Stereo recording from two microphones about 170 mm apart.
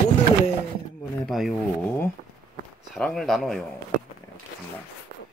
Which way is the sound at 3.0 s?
5° left (ahead or behind).